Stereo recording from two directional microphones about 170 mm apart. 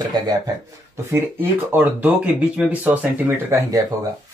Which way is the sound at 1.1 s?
10° right (ahead or behind).